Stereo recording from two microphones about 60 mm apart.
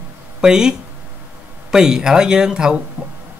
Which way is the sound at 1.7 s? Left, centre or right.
Centre.